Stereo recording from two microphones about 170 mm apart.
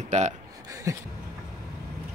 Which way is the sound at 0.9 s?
20° right (ahead or behind).